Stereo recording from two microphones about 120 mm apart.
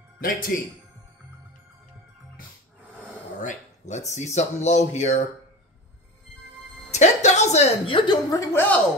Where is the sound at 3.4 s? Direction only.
75° left (ahead or behind).